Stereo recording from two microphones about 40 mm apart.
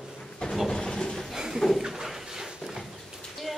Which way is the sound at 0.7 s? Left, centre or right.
Centre.